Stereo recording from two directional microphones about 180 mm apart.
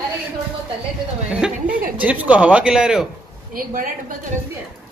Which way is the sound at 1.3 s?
5° right (ahead or behind).